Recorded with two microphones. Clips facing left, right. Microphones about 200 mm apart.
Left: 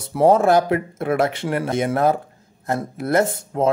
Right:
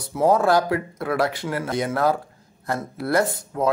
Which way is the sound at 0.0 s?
25° left (ahead or behind).